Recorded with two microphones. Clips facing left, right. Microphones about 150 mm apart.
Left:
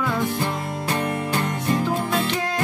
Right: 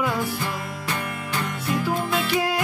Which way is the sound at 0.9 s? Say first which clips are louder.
Left 6 dB; 35° left (ahead or behind).